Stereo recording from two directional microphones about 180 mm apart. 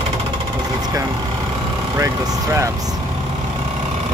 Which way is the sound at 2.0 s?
15° right (ahead or behind).